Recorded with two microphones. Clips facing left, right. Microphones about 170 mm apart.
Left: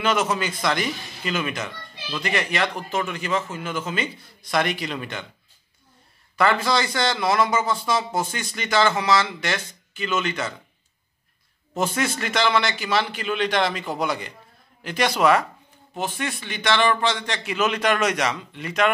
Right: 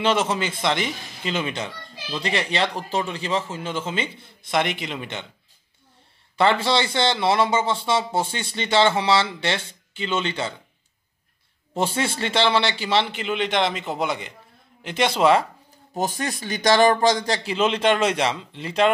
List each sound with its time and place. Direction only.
0.0 s speech: 30° right (ahead or behind)
6.3 s speech: 30° right (ahead or behind)
11.7 s speech: 30° right (ahead or behind)
15.9 s a man's voice: 40° right (ahead or behind)